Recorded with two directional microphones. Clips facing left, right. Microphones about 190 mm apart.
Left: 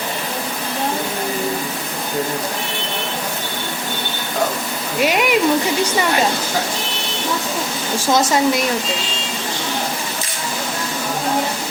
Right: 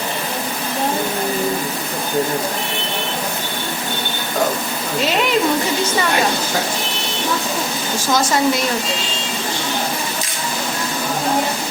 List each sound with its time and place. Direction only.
5.0 s speech: 15° left (ahead or behind)
8.1 s speech: 20° left (ahead or behind)